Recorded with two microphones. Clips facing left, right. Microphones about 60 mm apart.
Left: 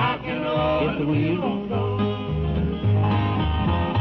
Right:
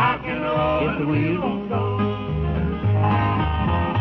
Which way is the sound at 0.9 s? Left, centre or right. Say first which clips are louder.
Right 1 dB; right.